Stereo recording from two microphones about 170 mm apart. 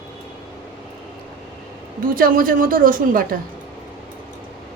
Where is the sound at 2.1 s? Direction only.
55° right (ahead or behind).